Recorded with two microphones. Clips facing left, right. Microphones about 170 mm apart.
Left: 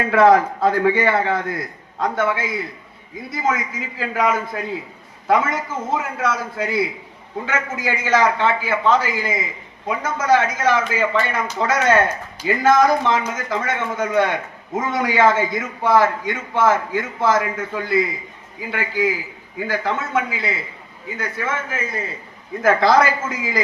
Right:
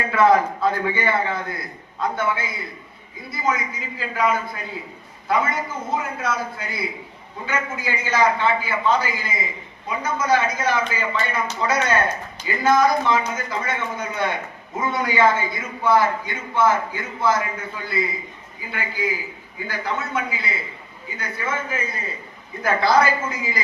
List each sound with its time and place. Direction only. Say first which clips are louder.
0.1 s a man's voice: left 3 dB; 80° left
20.1 s a man's voice: left 4 dB; 90° left